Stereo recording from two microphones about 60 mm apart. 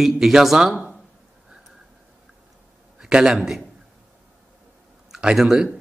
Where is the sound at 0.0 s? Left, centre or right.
Centre.